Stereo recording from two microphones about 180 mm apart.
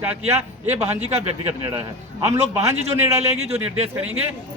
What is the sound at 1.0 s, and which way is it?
Speech, 30° right (ahead or behind).